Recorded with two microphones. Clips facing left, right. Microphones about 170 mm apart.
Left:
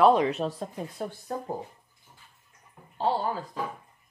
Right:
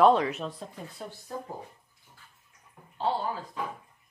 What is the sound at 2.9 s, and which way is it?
Speech, 40° left (ahead or behind).